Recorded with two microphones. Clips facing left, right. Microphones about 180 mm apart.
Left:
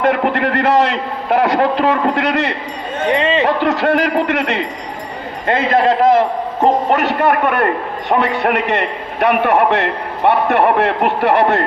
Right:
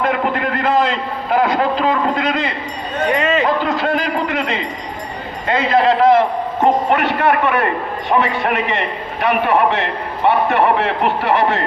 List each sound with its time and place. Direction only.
0.0 s a sound: 65° left (ahead or behind)
1.4 s a man's voice: 65° left (ahead or behind)
3.1 s speech: 30° left (ahead or behind)
3.4 s a man's voice: 70° left (ahead or behind)
5.5 s a man's voice: 50° left (ahead or behind)
8.2 s a man's voice: 65° left (ahead or behind)